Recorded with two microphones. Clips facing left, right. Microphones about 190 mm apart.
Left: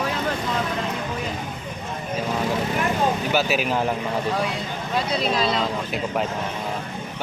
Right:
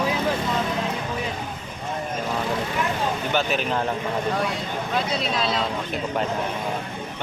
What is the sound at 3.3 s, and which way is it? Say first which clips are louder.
Speech: left 2 dB; 5° left (ahead or behind).